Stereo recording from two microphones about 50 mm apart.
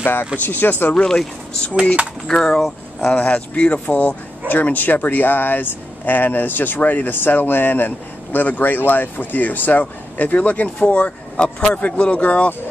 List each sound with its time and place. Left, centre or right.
0.0 s speech: left
1.0 s speech: centre
3.2 s speech: left